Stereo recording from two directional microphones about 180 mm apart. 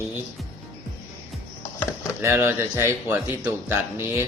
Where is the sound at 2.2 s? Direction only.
15° right (ahead or behind).